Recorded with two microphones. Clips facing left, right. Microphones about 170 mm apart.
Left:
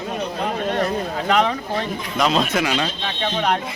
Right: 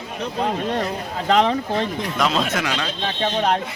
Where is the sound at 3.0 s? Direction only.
35° right (ahead or behind).